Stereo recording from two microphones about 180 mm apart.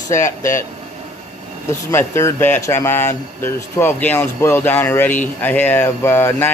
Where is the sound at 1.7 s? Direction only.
15° left (ahead or behind).